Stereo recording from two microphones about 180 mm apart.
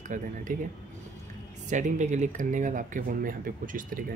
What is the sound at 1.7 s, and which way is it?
Speech, 45° right (ahead or behind).